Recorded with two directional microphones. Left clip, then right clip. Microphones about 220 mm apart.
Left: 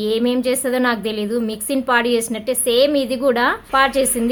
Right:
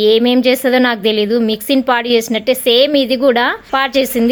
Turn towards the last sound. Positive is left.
turn(degrees=-25)  # may be behind; listen again after turning